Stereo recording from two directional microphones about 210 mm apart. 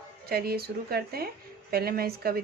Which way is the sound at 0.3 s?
45° right (ahead or behind).